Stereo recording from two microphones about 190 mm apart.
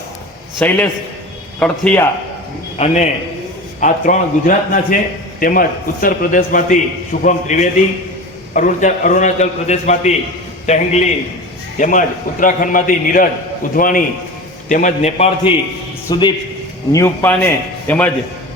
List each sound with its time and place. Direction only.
0.6 s a man's voice: 10° left (ahead or behind)
2.7 s a man's voice: 35° left (ahead or behind)
16.0 s a man's voice: 25° left (ahead or behind)